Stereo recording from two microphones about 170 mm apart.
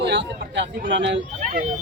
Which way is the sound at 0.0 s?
90° right.